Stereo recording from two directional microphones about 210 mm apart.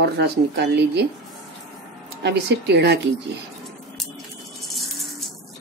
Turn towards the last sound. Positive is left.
turn(degrees=0)  # may be behind; listen again after turning